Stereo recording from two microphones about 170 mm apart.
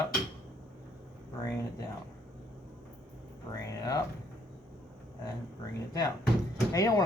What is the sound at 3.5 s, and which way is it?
Speech, 20° left (ahead or behind).